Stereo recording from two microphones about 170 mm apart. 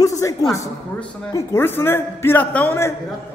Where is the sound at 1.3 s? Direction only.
15° left (ahead or behind).